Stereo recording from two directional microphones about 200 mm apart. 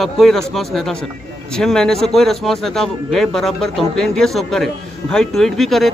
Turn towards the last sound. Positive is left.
turn(degrees=0)  # may be behind; listen again after turning